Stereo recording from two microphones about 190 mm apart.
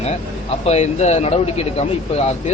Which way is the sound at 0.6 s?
35° left (ahead or behind).